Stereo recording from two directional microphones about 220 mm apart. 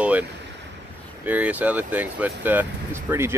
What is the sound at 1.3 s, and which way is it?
Speech, 5° right (ahead or behind).